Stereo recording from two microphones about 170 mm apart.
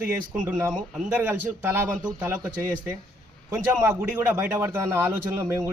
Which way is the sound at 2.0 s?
20° right (ahead or behind).